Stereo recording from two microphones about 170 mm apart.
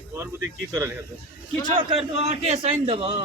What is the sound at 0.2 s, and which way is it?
Speech, 15° right (ahead or behind).